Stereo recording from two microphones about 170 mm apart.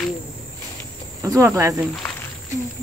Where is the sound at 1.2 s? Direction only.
20° right (ahead or behind).